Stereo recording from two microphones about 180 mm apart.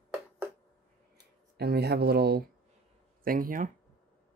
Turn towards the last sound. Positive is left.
turn(degrees=-50)  # may be behind; listen again after turning